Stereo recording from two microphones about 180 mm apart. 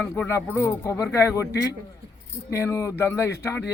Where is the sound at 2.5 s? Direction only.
15° left (ahead or behind).